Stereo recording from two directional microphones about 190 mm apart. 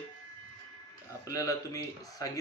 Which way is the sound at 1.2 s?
20° left (ahead or behind).